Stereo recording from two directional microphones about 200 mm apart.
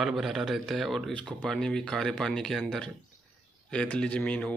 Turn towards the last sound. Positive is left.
turn(degrees=5)  # may be behind; listen again after turning